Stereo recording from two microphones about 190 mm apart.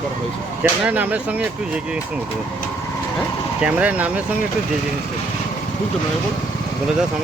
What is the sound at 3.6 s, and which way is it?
Speech, 5° right (ahead or behind).